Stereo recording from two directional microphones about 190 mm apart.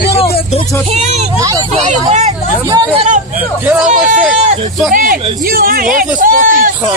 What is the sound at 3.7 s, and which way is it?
Speech, 5° right (ahead or behind).